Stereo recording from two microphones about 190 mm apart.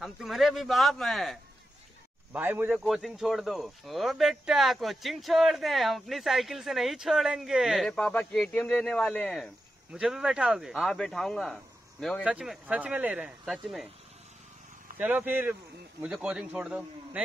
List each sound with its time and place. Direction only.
0.0 s speech: centre (ahead or behind)
15.0 s speech: 10° right (ahead or behind)